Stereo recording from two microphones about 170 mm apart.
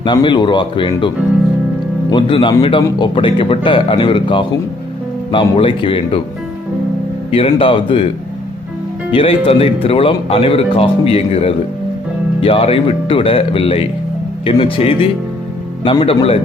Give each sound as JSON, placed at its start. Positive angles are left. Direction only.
{"t": 0.0, "sound": "speech", "side_deg": 30}
{"t": 7.3, "sound": "speech", "side_deg": 35}
{"t": 9.1, "sound": "speech", "side_deg": 35}